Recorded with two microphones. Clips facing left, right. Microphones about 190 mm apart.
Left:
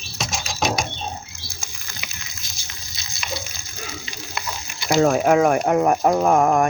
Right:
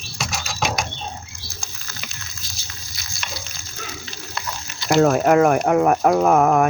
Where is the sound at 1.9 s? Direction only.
15° left (ahead or behind).